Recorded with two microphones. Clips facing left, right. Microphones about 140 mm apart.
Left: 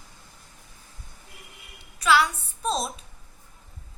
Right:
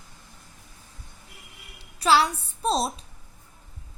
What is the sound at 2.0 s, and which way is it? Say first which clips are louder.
A woman's voice: right 1 dB; 35° right (ahead or behind).